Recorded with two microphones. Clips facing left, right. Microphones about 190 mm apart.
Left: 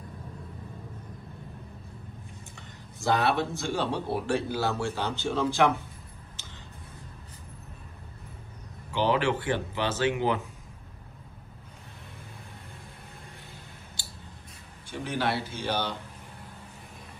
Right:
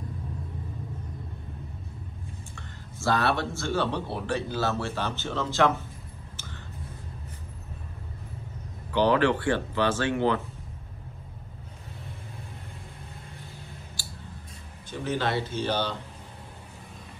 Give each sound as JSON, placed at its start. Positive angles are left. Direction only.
{"t": 2.5, "sound": "speech", "side_deg": 15}
{"t": 9.0, "sound": "speech", "side_deg": 15}
{"t": 14.9, "sound": "speech", "side_deg": 10}